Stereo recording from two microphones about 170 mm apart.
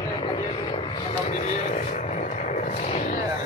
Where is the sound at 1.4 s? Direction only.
45° left (ahead or behind).